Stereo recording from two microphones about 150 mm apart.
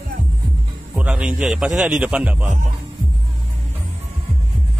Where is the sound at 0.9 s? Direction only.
5° right (ahead or behind).